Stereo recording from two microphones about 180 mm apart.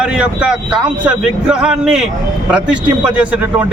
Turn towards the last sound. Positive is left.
turn(degrees=-5)  # may be behind; listen again after turning